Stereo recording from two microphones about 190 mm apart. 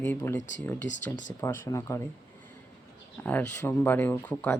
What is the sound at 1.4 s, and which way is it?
Speech, 15° left (ahead or behind).